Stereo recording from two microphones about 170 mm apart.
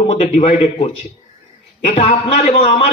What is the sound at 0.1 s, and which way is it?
A man's voice, 35° left (ahead or behind).